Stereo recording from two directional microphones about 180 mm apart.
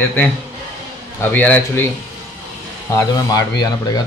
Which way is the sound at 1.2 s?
10° left (ahead or behind).